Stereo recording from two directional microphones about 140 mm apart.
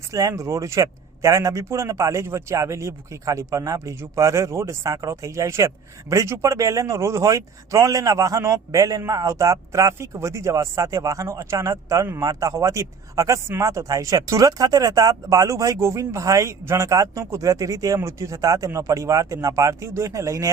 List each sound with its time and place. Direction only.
0.1 s speech: 25° right (ahead or behind)